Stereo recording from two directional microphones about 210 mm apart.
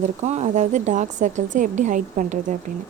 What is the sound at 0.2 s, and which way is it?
Speech, 30° right (ahead or behind).